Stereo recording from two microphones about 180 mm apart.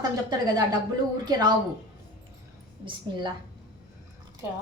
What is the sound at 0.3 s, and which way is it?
A woman's voice, 20° right (ahead or behind).